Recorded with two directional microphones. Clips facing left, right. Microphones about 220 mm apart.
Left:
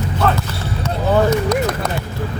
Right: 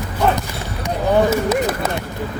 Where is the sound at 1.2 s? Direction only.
5° right (ahead or behind).